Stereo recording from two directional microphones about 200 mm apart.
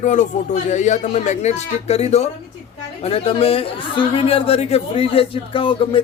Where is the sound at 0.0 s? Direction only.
40° left (ahead or behind).